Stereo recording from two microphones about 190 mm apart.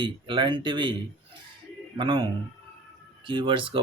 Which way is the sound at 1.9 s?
25° right (ahead or behind).